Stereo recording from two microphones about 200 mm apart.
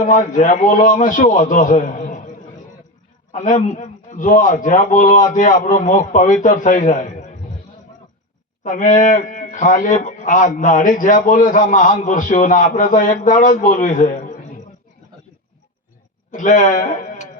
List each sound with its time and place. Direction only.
0.0 s a man's voice: 40° left (ahead or behind)
3.3 s a man's voice: 40° left (ahead or behind)
8.6 s a man's voice: 40° left (ahead or behind)
16.3 s speech: 40° left (ahead or behind)